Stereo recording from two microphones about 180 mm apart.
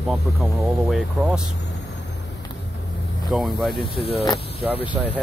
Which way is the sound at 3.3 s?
Centre (ahead or behind).